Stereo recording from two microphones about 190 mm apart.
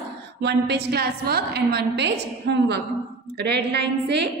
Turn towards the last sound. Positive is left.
turn(degrees=-65)  # may be behind; listen again after turning